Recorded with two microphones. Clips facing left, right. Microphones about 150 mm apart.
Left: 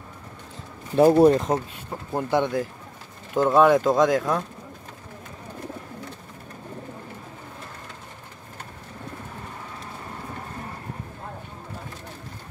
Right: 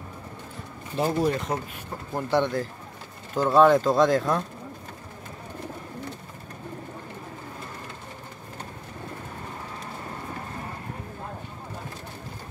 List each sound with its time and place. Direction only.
0.9 s speech: 60° left (ahead or behind)
2.1 s speech: 15° left (ahead or behind)